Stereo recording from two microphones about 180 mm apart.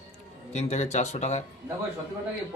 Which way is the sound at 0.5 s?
40° left (ahead or behind).